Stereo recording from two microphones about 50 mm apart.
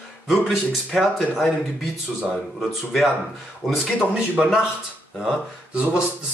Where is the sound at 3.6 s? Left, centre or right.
Centre.